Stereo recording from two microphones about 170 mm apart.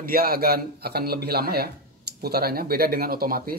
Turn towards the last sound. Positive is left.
turn(degrees=-60)  # may be behind; listen again after turning